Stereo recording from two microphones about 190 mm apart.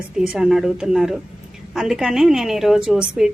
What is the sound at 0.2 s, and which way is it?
A woman's voice, centre (ahead or behind).